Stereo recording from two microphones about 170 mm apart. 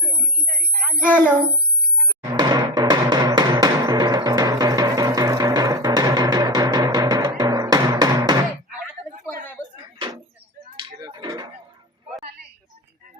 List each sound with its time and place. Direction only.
0.1 s a woman's voice: 50° right (ahead or behind)
2.0 s music: 25° right (ahead or behind)
10.8 s a sound: 25° right (ahead or behind)